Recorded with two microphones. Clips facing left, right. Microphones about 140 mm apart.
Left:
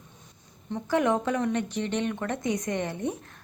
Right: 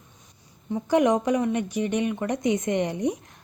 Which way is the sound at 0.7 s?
15° right (ahead or behind).